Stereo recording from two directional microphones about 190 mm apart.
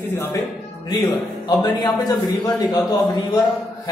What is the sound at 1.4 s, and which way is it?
A man's voice, 20° left (ahead or behind).